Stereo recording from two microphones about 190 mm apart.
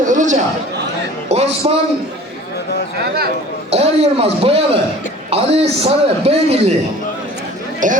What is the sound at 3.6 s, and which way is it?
Speech, 30° right (ahead or behind).